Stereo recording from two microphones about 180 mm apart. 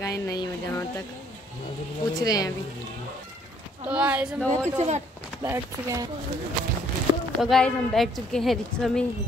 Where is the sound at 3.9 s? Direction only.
5° right (ahead or behind).